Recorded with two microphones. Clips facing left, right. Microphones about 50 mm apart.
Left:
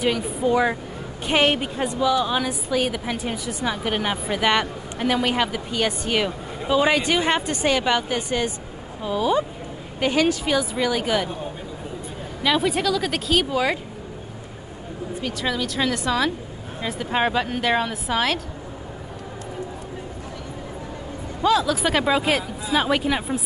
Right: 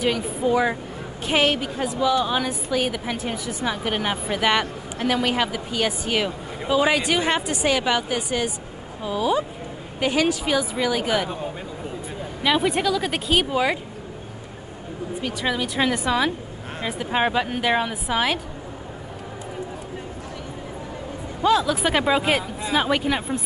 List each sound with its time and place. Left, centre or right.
0.0 s a woman's voice: centre
1.5 s speech: centre
1.9 s a woman's voice: centre
12.4 s a woman's voice: centre
15.2 s a woman's voice: centre
21.4 s a woman's voice: centre